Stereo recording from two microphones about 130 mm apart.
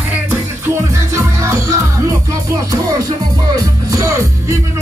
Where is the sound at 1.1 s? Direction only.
20° right (ahead or behind).